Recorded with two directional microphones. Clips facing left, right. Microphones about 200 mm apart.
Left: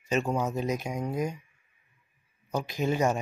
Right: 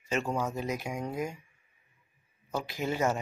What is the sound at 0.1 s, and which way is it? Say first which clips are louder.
Speech: left 3 dB; 15° left (ahead or behind).